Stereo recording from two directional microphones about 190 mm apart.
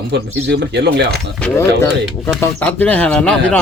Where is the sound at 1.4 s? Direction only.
10° left (ahead or behind).